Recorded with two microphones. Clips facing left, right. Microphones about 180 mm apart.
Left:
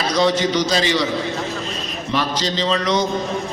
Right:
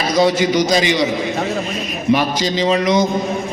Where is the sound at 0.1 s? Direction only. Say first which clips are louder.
Right 4 dB; 10° right (ahead or behind).